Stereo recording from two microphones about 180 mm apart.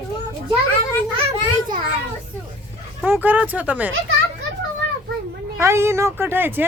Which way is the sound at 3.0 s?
10° right (ahead or behind).